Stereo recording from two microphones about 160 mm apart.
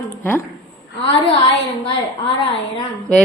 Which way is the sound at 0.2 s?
10° left (ahead or behind).